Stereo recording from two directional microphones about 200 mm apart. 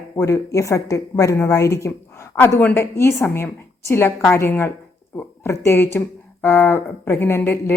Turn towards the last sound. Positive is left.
turn(degrees=10)  # may be behind; listen again after turning